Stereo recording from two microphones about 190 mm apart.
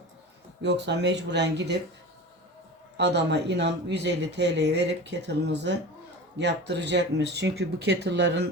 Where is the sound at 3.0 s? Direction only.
65° right (ahead or behind).